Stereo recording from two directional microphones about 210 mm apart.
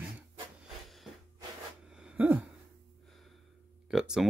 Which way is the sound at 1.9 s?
5° right (ahead or behind).